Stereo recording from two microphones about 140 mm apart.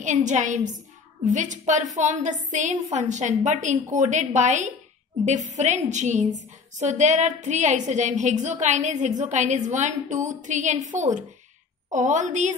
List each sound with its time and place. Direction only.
0.0 s a woman's voice: 60° right (ahead or behind)